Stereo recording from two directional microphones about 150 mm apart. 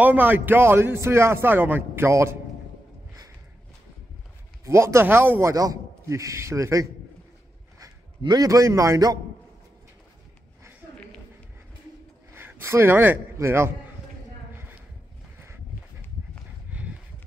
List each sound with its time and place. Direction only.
0.0 s a man's voice: 10° right (ahead or behind)
4.6 s a man's voice: 20° right (ahead or behind)
12.4 s a man's voice: 15° right (ahead or behind)
16.7 s a sound: 10° right (ahead or behind)